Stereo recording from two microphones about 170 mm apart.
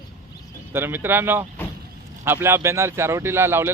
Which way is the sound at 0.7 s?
15° right (ahead or behind).